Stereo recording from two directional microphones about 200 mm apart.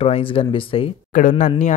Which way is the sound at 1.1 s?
40° left (ahead or behind).